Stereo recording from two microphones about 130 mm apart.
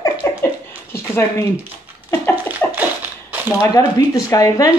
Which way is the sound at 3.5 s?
25° left (ahead or behind).